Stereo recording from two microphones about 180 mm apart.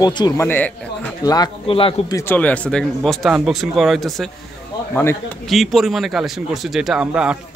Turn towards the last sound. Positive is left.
turn(degrees=-5)  # may be behind; listen again after turning